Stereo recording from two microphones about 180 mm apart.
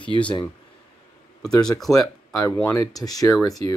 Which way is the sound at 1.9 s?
15° left (ahead or behind).